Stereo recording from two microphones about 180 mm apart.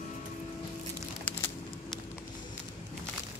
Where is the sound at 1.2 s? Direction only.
10° left (ahead or behind).